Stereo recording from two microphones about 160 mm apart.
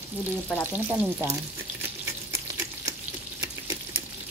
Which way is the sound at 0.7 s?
10° right (ahead or behind).